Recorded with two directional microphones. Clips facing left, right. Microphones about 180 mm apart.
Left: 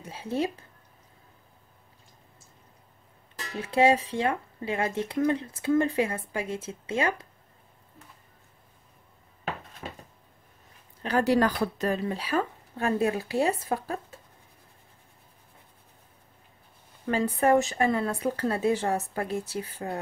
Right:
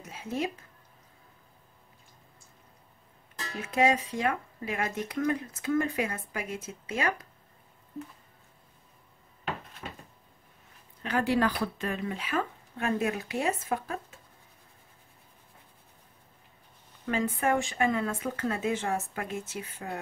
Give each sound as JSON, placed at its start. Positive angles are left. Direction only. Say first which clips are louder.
{"t": 0.0, "sound": "speech", "louder": "left 3 dB", "side_deg": 30}
{"t": 3.5, "sound": "speech", "louder": "left 4 dB", "side_deg": 30}
{"t": 11.0, "sound": "speech", "louder": "left 4 dB", "side_deg": 35}
{"t": 17.0, "sound": "speech", "louder": "left 4 dB", "side_deg": 35}